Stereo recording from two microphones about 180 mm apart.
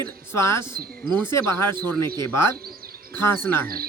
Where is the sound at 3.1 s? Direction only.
10° left (ahead or behind).